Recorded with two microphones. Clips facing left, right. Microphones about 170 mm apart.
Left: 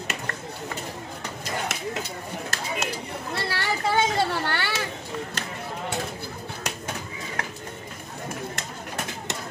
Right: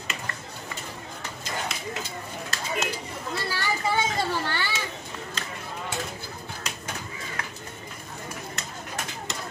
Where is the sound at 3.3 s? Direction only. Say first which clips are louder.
Left 1 dB; 70° left (ahead or behind).